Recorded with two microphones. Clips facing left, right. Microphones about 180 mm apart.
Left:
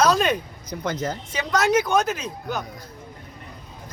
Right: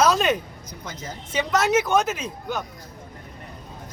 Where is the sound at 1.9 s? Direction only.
5° right (ahead or behind).